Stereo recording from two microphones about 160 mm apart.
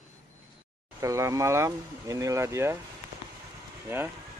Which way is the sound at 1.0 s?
20° right (ahead or behind).